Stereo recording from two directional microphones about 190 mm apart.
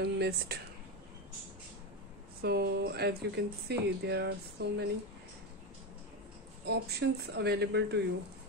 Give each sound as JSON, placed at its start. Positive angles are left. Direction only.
{"t": 0.0, "sound": "speech", "side_deg": -60}
{"t": 2.4, "sound": "speech", "side_deg": -55}
{"t": 6.6, "sound": "speech", "side_deg": -60}